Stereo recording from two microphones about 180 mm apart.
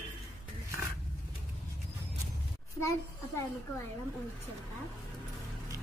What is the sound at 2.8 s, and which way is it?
Speech, 15° left (ahead or behind).